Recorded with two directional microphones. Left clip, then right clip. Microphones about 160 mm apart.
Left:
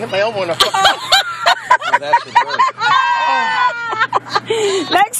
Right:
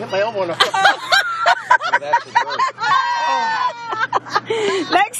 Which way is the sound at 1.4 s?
5° left (ahead or behind).